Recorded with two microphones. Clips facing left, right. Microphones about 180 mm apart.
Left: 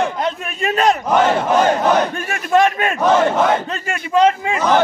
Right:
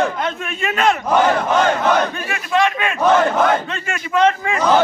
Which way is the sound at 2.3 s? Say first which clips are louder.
Left 4 dB; 45° left (ahead or behind).